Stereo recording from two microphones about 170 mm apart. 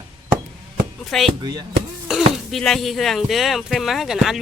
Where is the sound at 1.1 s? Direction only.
Centre (ahead or behind).